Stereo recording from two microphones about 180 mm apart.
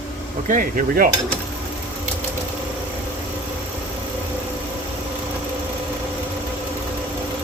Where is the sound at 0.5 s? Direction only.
50° right (ahead or behind).